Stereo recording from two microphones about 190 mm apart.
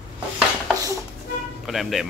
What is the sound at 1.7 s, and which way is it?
Speech, centre (ahead or behind).